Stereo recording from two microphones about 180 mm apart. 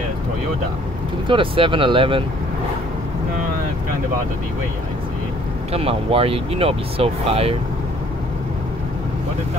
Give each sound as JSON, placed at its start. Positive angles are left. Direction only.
{"t": 1.2, "sound": "speech", "side_deg": -30}
{"t": 5.7, "sound": "speech", "side_deg": -30}